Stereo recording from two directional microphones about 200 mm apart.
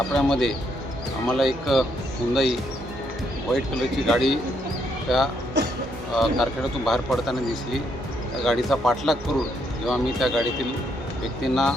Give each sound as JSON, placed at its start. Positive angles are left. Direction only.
{"t": 0.1, "sound": "speech", "side_deg": 0}
{"t": 5.6, "sound": "speech", "side_deg": -60}
{"t": 6.1, "sound": "speech", "side_deg": 0}
{"t": 11.4, "sound": "speech", "side_deg": 0}